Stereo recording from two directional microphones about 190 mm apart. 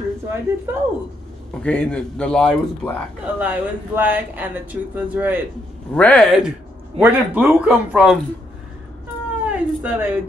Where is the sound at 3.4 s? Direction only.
10° right (ahead or behind).